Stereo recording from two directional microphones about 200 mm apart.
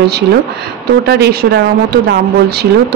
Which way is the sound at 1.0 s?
55° right (ahead or behind).